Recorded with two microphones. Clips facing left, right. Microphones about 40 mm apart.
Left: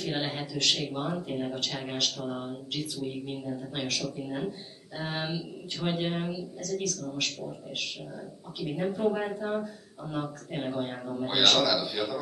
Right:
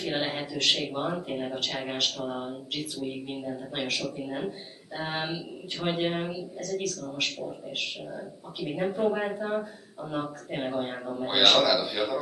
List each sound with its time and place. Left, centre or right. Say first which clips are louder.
0.0 s a man's voice: right 2 dB; centre